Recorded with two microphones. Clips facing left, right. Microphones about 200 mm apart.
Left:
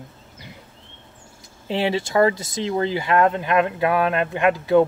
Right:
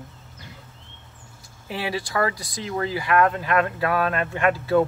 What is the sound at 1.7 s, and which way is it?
Speech, 25° left (ahead or behind).